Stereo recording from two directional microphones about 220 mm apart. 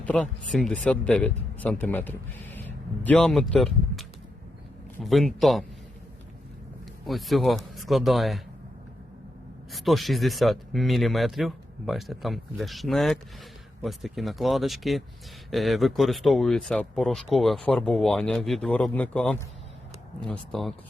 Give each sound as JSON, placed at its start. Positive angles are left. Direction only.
{"t": 0.0, "sound": "speech", "side_deg": 5}
{"t": 7.1, "sound": "speech", "side_deg": 0}
{"t": 9.7, "sound": "speech", "side_deg": 0}